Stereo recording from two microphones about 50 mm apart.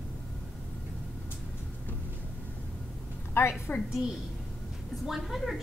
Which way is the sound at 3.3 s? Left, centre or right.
Left.